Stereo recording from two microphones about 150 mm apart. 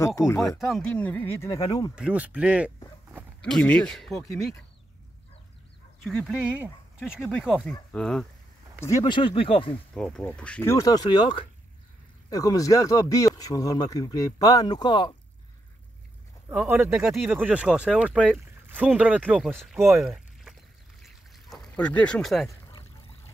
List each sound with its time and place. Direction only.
0.5 s speech: centre (ahead or behind); by 1.9 s 20° left (ahead or behind)
2.0 s speech: 10° right (ahead or behind)
3.4 s speech: 5° left (ahead or behind)
6.0 s speech: 5° right (ahead or behind)
8.8 s speech: 20° left (ahead or behind)
9.1 s speech: 35° left (ahead or behind)
9.9 s speech: 5° left (ahead or behind); by 15.1 s 30° left (ahead or behind)
16.4 s speech: 15° right (ahead or behind)
16.9 s speech: 5° right (ahead or behind)
21.0 s pour: centre (ahead or behind)